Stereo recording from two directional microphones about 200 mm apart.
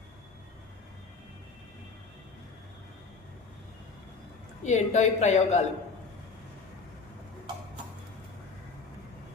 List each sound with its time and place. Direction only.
4.6 s a woman's voice: 35° left (ahead or behind)